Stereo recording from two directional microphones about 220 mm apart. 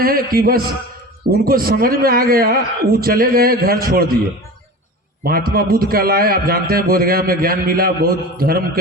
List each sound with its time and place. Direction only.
0.0 s a man's voice: 40° right (ahead or behind)
5.2 s a man's voice: 40° right (ahead or behind)